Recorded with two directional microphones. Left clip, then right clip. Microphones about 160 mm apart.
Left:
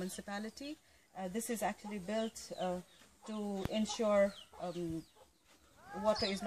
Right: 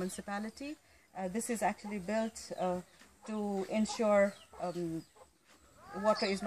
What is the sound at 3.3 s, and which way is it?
Speech, 15° left (ahead or behind).